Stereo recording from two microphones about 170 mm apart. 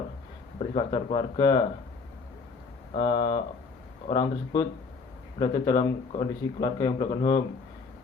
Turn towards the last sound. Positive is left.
turn(degrees=30)  # may be behind; listen again after turning